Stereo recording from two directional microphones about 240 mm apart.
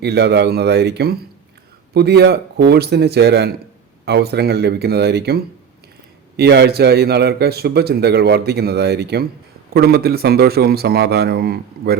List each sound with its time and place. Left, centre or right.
0.0 s a man's voice: right